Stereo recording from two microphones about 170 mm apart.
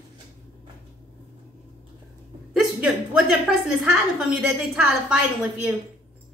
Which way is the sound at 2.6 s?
5° right (ahead or behind).